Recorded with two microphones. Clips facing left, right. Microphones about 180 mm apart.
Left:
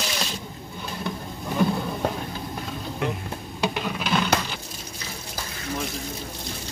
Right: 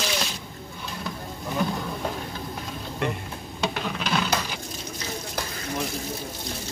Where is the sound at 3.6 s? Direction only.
10° left (ahead or behind).